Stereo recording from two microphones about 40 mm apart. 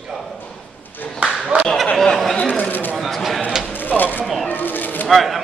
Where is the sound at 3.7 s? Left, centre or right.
Left.